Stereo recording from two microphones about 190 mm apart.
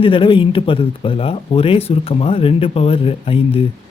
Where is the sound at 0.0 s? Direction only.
25° left (ahead or behind).